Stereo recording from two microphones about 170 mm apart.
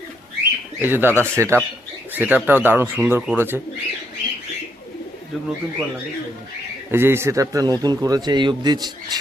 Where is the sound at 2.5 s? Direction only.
10° right (ahead or behind).